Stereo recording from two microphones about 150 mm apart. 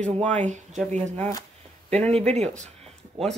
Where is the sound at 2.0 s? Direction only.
5° left (ahead or behind).